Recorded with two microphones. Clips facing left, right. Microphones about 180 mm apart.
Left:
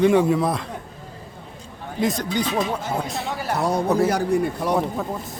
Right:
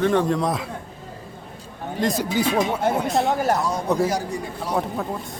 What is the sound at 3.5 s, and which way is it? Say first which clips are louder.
Speech: left 2 dB; 60° left (ahead or behind).